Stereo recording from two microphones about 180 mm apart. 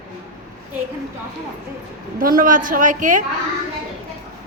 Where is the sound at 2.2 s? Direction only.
50° right (ahead or behind).